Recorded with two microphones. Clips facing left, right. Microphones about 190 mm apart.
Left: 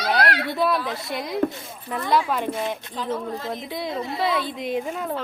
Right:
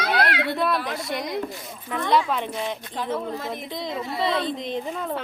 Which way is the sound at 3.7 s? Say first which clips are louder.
Left 1 dB; 5° left (ahead or behind).